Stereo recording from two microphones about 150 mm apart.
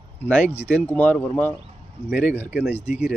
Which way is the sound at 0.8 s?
10° left (ahead or behind).